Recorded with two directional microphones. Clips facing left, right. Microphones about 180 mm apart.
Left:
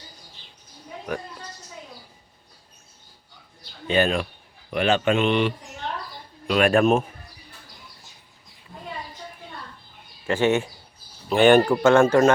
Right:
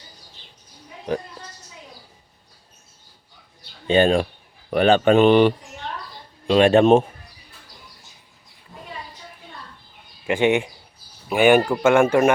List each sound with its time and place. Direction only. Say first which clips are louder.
3.8 s a man's voice: right 5 dB; 30° right (ahead or behind)
4.7 s speech: right 6 dB; 40° right (ahead or behind)
6.5 s a man's voice: right 5 dB; 25° right (ahead or behind)
10.2 s speech: right 2 dB; 15° right (ahead or behind)